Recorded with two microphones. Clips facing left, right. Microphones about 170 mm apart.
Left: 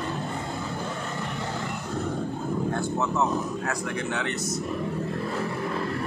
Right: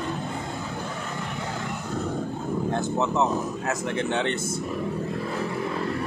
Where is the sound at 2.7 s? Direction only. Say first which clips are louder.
Right 2 dB; 20° right (ahead or behind).